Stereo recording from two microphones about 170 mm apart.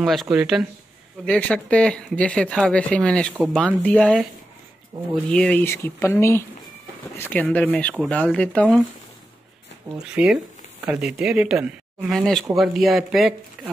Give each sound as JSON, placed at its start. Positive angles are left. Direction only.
{"t": 0.0, "sound": "speech", "side_deg": 0}
{"t": 5.3, "sound": "speech", "side_deg": 5}
{"t": 9.9, "sound": "speech", "side_deg": -5}